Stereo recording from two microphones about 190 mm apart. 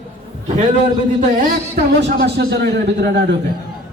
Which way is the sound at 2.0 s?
60° right (ahead or behind).